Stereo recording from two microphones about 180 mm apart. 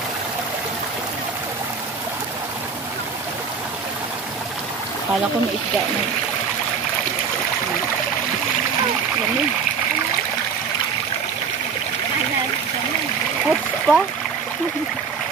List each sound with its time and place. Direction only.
13.5 s speech: centre (ahead or behind)